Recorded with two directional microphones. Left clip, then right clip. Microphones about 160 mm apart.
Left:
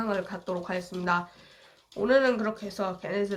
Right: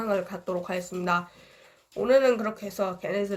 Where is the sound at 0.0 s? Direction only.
20° right (ahead or behind).